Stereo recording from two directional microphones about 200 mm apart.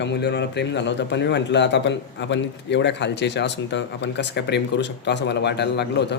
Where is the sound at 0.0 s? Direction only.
60° left (ahead or behind).